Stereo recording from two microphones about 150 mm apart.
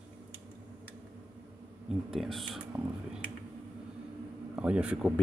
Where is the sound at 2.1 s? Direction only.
Centre (ahead or behind).